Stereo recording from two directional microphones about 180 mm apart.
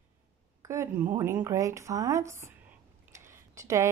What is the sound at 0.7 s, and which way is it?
Speech, 15° right (ahead or behind).